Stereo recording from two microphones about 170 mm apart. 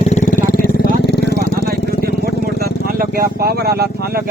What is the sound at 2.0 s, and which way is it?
Vehicle, 65° right (ahead or behind).